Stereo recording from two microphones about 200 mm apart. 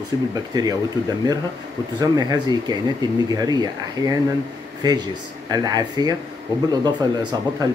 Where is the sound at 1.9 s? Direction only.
20° right (ahead or behind).